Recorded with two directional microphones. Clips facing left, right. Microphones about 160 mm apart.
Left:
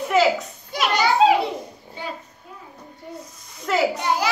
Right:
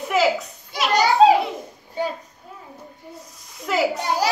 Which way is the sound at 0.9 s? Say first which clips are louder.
Right 3 dB; 40° right (ahead or behind).